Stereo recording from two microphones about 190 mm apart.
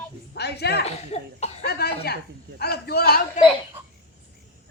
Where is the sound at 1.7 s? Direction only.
55° left (ahead or behind).